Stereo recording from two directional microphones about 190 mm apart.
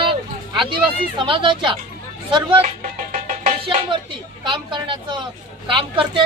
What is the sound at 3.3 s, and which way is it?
Music, 30° right (ahead or behind).